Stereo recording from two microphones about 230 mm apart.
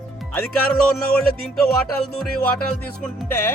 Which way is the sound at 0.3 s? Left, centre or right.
Centre.